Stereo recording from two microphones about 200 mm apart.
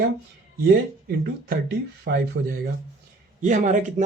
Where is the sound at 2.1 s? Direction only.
55° right (ahead or behind).